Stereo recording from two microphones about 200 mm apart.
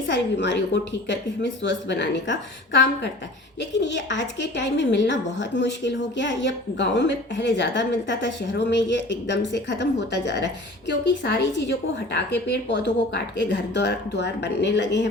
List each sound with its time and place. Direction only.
0.1 s a woman's voice: 60° left (ahead or behind)